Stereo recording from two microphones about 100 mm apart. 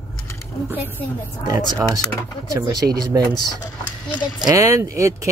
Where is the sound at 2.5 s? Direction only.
40° right (ahead or behind).